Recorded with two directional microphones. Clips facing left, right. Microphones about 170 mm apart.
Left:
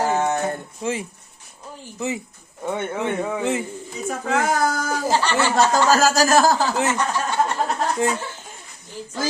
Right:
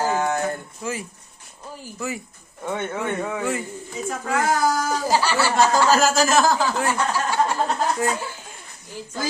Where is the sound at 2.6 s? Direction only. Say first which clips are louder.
Left 2 dB; 15° left (ahead or behind).